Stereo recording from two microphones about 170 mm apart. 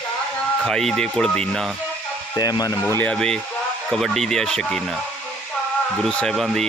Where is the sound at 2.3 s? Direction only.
20° left (ahead or behind); by 4.8 s 5° left (ahead or behind).